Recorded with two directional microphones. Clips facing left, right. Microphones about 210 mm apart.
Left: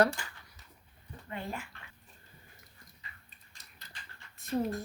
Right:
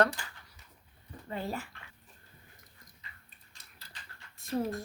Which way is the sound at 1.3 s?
35° right (ahead or behind).